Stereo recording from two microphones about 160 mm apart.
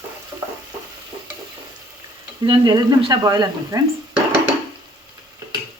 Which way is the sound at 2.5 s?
30° right (ahead or behind).